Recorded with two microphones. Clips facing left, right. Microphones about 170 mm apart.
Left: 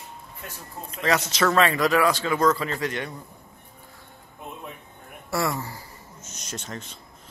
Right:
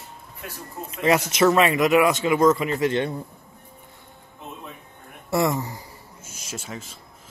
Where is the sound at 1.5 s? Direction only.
15° right (ahead or behind).